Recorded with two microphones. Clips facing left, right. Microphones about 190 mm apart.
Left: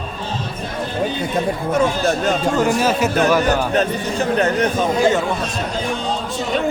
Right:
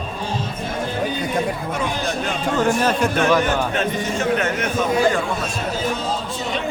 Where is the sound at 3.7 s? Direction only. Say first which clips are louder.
Left 3 dB; 35° left (ahead or behind).